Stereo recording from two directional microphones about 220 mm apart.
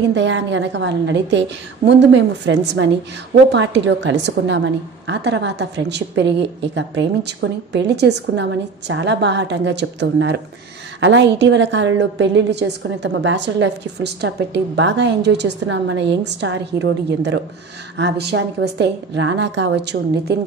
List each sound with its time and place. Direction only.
0.1 s a woman's voice: 55° right (ahead or behind)